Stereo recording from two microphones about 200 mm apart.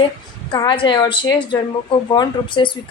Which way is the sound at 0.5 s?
25° left (ahead or behind).